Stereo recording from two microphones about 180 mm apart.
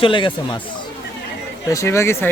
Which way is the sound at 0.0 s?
25° left (ahead or behind).